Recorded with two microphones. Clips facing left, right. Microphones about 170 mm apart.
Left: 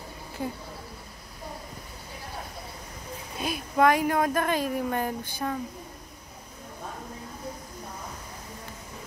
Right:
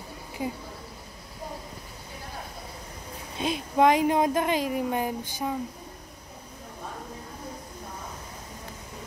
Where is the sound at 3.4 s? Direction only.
25° right (ahead or behind).